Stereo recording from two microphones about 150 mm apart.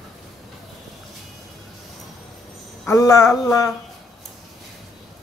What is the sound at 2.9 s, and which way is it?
Speech, 20° left (ahead or behind).